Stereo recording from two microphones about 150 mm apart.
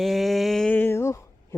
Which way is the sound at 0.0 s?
Centre (ahead or behind).